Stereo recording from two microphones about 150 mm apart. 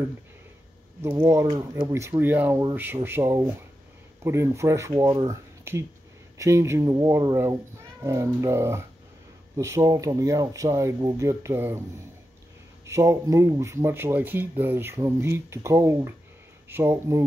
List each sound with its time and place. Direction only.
1.2 s speech: 20° right (ahead or behind)
5.0 s speech: 30° right (ahead or behind)
5.3 s speech: 20° right (ahead or behind)
12.8 s speech: 20° right (ahead or behind)